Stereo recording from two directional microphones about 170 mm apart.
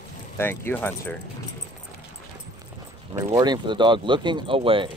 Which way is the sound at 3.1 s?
25° right (ahead or behind).